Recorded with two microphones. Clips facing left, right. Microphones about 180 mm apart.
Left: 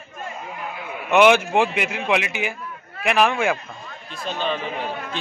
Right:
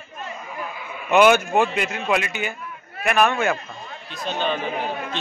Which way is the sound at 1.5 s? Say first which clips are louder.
Even; 5° left (ahead or behind).